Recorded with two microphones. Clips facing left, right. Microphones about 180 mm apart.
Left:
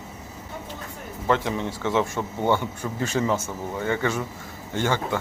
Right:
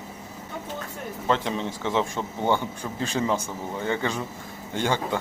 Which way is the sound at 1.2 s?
20° right (ahead or behind).